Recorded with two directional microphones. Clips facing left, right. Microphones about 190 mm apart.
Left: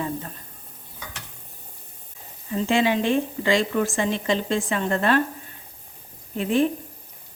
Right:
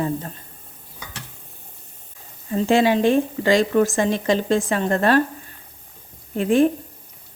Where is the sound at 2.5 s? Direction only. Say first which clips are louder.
Right 4 dB; 40° right (ahead or behind).